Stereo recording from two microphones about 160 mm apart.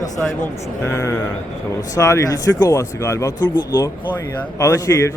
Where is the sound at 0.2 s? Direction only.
10° left (ahead or behind).